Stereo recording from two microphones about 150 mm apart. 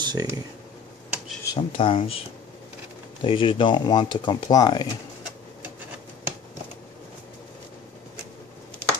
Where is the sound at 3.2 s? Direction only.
35° left (ahead or behind).